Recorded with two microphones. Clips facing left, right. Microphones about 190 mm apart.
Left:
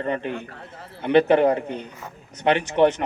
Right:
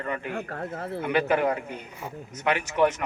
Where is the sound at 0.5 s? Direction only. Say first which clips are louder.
Right 9 dB; 55° right (ahead or behind).